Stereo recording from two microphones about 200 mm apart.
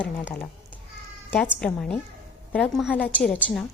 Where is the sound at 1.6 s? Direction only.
5° left (ahead or behind).